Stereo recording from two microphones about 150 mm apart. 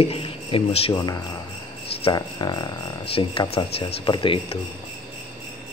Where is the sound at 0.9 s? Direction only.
25° left (ahead or behind).